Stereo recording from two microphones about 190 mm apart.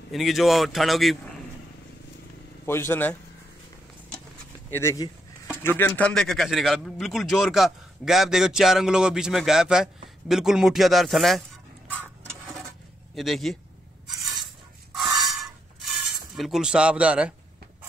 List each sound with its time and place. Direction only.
0.1 s a man's voice: centre (ahead or behind)
2.6 s speech: 10° left (ahead or behind)
4.7 s a man's voice: 15° left (ahead or behind); by 11.4 s centre (ahead or behind)
13.1 s a man's voice: centre (ahead or behind)
15.0 s rub: centre (ahead or behind)
16.3 s a man's voice: centre (ahead or behind)